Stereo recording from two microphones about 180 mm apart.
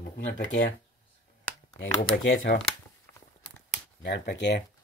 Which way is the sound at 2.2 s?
90° left.